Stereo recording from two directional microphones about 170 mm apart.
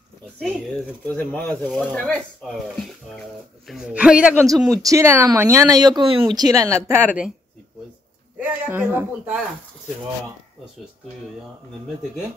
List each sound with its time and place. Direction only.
0.4 s speech: 5° right (ahead or behind)
1.0 s a man's voice: 10° left (ahead or behind); by 4.5 s 5° right (ahead or behind)
4.6 s speech: 20° right (ahead or behind)
6.6 s a man's voice: 15° right (ahead or behind)
8.4 s a man's voice: 10° right (ahead or behind)